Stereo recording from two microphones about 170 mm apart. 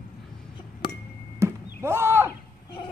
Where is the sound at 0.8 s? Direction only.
30° left (ahead or behind).